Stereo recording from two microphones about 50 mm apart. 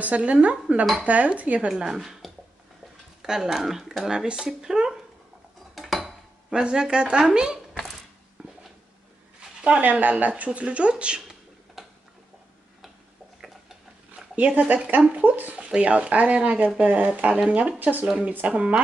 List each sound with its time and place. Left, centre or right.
0.0 s speech: right
1.7 s speech: centre
3.2 s speech: centre
5.8 s dishes: centre
6.5 s speech: centre
8.4 s a sound: right
9.8 s speech: right
11.8 s a sound: centre
14.3 s speech: right
15.5 s speech: right
17.7 s speech: right
18.5 s speech: right